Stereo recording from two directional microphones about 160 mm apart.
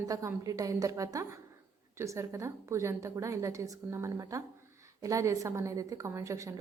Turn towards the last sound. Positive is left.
turn(degrees=-20)  # may be behind; listen again after turning